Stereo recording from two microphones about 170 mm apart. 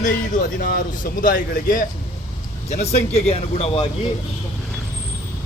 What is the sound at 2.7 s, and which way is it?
A man's voice, 40° left (ahead or behind).